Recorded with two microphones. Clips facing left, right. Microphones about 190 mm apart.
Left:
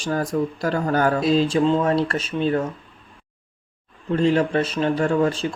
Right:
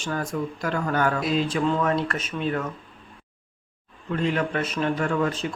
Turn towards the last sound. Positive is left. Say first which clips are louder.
# left 5 dB
turn(degrees=30)  # may be behind; listen again after turning